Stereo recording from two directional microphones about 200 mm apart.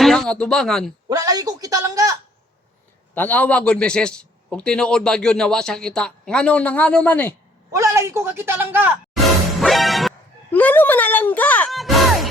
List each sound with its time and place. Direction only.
0.0 s speech: centre (ahead or behind)
1.1 s a man's voice: 20° right (ahead or behind)
3.2 s a man's voice: 10° left (ahead or behind)
7.7 s a man's voice: 15° right (ahead or behind)
9.6 s music: centre (ahead or behind)